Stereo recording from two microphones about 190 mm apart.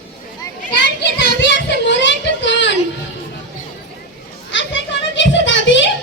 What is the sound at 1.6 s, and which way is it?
Child singing, 70° left (ahead or behind).